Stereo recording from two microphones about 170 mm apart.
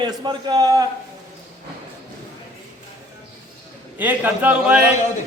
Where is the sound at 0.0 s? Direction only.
25° right (ahead or behind).